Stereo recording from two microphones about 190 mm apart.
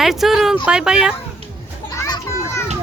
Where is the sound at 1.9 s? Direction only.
15° left (ahead or behind).